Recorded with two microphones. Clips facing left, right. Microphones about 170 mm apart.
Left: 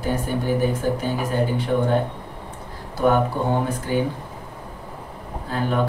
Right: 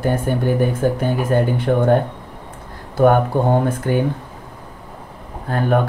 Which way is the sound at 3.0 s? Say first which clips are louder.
Right 5 dB; 50° right (ahead or behind).